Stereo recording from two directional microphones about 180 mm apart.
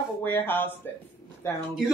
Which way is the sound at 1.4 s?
15° left (ahead or behind).